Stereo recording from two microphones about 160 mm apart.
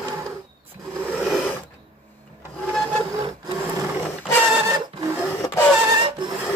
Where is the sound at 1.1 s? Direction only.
5° right (ahead or behind).